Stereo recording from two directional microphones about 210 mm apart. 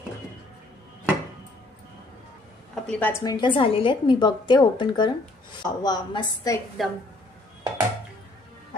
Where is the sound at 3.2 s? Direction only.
20° left (ahead or behind).